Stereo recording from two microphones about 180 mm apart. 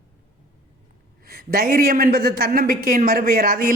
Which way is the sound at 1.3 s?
55° right (ahead or behind).